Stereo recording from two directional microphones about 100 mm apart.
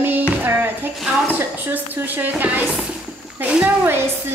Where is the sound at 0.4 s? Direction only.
20° right (ahead or behind).